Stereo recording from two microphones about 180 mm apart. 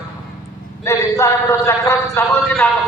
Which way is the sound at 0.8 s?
15° left (ahead or behind).